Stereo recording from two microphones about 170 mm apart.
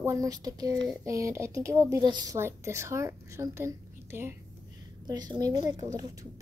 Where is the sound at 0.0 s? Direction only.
15° right (ahead or behind).